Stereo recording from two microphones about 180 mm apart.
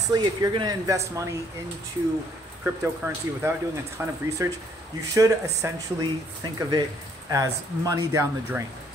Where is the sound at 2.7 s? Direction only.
10° right (ahead or behind).